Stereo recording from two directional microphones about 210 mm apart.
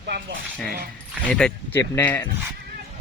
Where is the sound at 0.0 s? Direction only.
50° right (ahead or behind).